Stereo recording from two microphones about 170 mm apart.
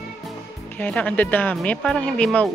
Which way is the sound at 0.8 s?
10° left (ahead or behind).